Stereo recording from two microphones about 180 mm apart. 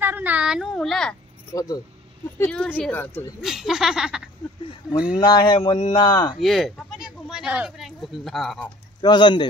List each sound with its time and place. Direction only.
0.0 s speech: 10° right (ahead or behind)
1.5 s speech: 20° left (ahead or behind)
2.3 s speech: 10° left (ahead or behind)
3.3 s speech: centre (ahead or behind)
5.1 s speech: 25° left (ahead or behind)
6.4 s speech: centre (ahead or behind)
9.0 s speech: 25° left (ahead or behind)